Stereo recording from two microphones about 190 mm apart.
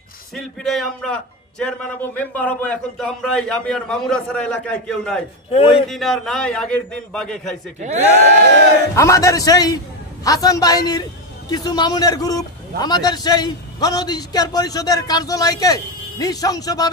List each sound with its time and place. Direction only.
0.3 s a man's voice: centre (ahead or behind)
5.5 s a man's voice: 30° left (ahead or behind)
5.9 s a man's voice: centre (ahead or behind)
8.9 s a man's voice: 15° left (ahead or behind)